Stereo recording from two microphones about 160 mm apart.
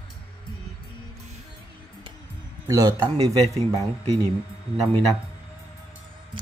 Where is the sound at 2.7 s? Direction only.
25° right (ahead or behind).